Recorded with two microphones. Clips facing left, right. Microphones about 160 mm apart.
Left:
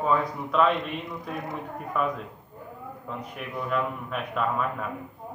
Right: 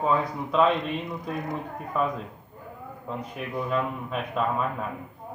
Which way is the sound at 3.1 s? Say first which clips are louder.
Right 3 dB; 25° right (ahead or behind).